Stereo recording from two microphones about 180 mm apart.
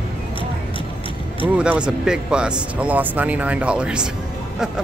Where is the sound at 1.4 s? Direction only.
5° right (ahead or behind).